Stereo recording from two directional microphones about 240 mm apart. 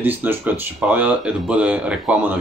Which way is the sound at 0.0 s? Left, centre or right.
Centre.